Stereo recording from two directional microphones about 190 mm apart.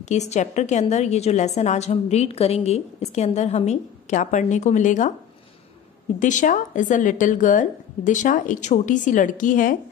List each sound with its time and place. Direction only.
0.0 s a woman's voice: 35° left (ahead or behind)
6.1 s a woman's voice: 40° left (ahead or behind)